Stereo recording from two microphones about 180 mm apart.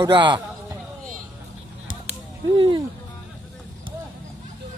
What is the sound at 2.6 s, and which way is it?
Speech, 25° right (ahead or behind).